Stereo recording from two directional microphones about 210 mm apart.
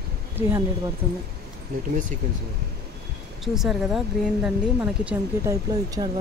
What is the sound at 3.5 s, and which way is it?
Speech, centre (ahead or behind).